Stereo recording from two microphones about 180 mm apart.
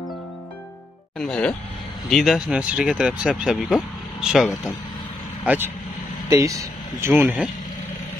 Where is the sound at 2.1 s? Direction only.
Centre (ahead or behind).